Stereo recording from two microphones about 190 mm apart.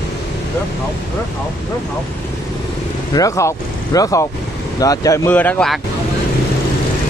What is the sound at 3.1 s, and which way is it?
Speech, 15° left (ahead or behind).